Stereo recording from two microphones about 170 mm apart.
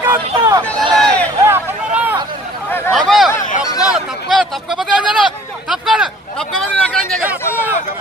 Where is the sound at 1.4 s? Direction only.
10° right (ahead or behind).